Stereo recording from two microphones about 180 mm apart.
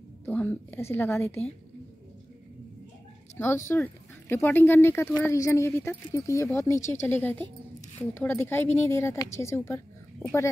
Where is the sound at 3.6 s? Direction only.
10° left (ahead or behind).